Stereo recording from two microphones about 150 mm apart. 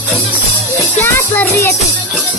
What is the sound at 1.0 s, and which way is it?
Music, 15° left (ahead or behind).